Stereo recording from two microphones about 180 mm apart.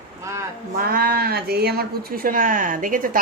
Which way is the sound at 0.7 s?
55° right (ahead or behind).